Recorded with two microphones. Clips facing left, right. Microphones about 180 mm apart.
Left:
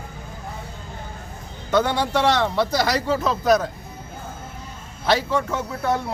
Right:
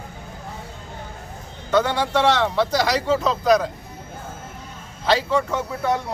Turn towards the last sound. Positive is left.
turn(degrees=-15)  # may be behind; listen again after turning